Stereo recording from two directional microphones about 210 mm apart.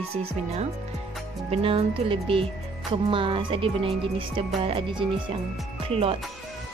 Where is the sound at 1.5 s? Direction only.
25° right (ahead or behind).